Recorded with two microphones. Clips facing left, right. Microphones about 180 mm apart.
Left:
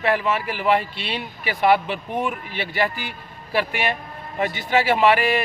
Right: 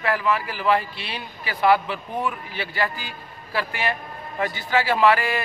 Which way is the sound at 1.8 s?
20° left (ahead or behind).